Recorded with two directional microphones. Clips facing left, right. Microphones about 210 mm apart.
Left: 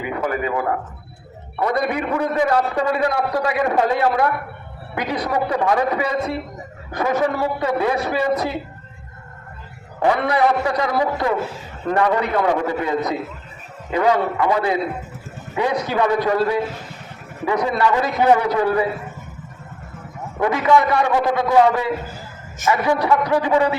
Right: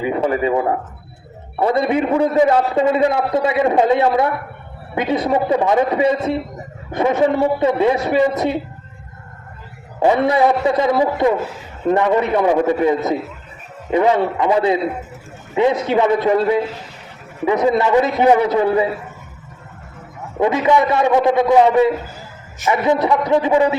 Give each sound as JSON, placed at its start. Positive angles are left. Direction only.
{"t": 0.0, "sound": "a man's voice", "side_deg": -25}
{"t": 10.0, "sound": "a man's voice", "side_deg": -25}
{"t": 20.4, "sound": "a man's voice", "side_deg": -20}